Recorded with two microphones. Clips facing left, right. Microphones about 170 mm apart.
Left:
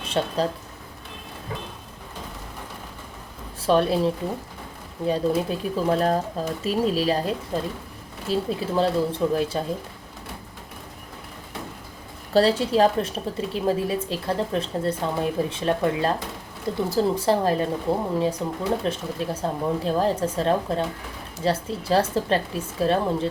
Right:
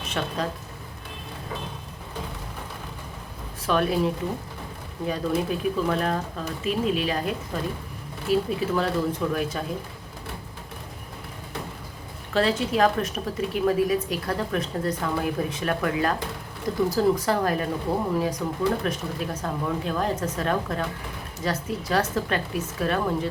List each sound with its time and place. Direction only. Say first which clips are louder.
0.1 s speech: left 5 dB; 30° left (ahead or behind)
3.7 s a woman's voice: left 3 dB; 30° left (ahead or behind)
12.3 s a woman's voice: left 4 dB; 35° left (ahead or behind)